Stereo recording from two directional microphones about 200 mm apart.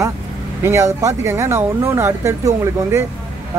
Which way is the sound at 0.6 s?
15° right (ahead or behind).